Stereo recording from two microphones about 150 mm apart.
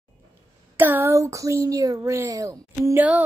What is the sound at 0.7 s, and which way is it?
A woman's voice, 15° right (ahead or behind).